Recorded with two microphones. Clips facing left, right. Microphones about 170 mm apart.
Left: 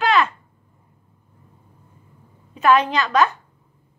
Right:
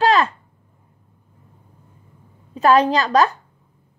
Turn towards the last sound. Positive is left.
turn(degrees=-35)  # may be behind; listen again after turning